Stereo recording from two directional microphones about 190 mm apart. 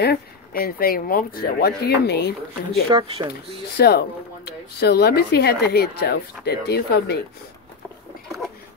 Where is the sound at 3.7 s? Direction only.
55° left (ahead or behind).